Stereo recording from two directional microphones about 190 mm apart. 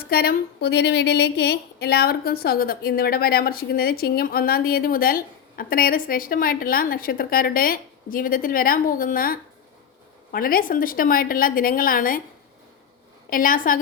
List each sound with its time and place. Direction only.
0.0 s a woman's voice: 55° left (ahead or behind)
13.3 s a woman's voice: 45° left (ahead or behind)